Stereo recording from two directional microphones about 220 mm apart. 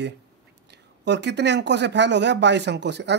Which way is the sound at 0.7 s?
50° right (ahead or behind).